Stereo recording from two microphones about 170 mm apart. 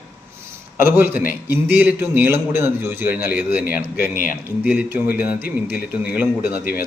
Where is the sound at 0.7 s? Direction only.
15° right (ahead or behind).